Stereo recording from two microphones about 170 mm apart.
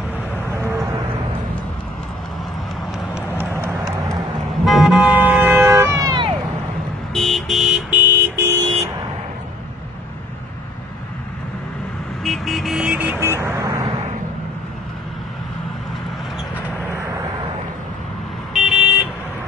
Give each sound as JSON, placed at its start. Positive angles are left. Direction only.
{"t": 0.5, "sound": "a sound", "side_deg": -15}
{"t": 3.2, "sound": "a sound", "side_deg": -15}
{"t": 4.6, "sound": "vehicle", "side_deg": 0}
{"t": 7.2, "sound": "vehicle", "side_deg": 0}
{"t": 12.2, "sound": "vehicle", "side_deg": 0}
{"t": 18.5, "sound": "vehicle", "side_deg": 0}